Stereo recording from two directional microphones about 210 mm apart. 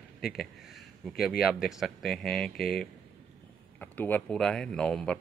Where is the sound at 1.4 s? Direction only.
Centre (ahead or behind).